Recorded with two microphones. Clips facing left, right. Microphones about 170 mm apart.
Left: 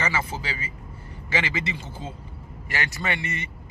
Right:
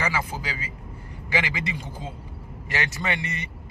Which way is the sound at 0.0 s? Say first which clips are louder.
Even; 10° right (ahead or behind).